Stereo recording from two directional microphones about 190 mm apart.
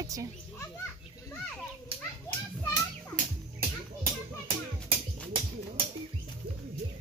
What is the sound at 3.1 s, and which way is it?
Music, 45° right (ahead or behind).